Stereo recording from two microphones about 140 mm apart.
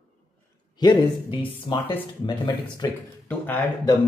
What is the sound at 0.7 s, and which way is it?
Speech, 35° left (ahead or behind).